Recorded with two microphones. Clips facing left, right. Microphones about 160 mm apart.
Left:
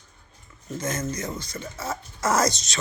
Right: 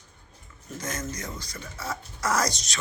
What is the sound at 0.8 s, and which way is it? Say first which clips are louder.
Speech: left 5 dB; 20° left (ahead or behind).